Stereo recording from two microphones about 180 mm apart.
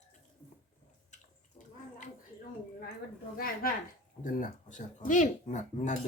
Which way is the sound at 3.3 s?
55° left (ahead or behind).